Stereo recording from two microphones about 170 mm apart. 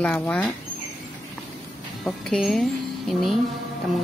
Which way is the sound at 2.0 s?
Centre (ahead or behind).